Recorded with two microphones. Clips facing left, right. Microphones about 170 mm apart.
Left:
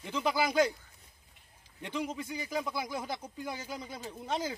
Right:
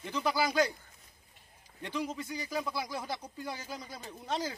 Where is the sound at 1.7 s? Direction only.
15° left (ahead or behind).